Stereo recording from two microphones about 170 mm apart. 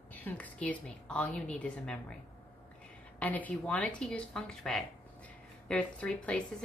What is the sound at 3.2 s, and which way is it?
Speech, 10° left (ahead or behind).